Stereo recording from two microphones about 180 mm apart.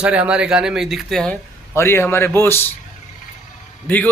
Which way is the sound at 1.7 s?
15° left (ahead or behind).